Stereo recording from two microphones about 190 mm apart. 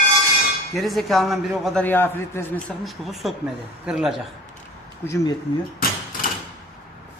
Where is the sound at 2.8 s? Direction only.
Centre (ahead or behind).